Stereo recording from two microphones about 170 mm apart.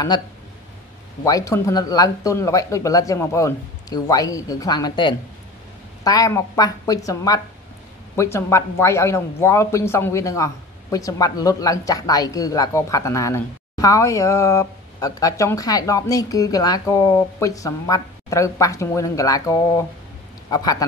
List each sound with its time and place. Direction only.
1.2 s a man's voice: 20° left (ahead or behind)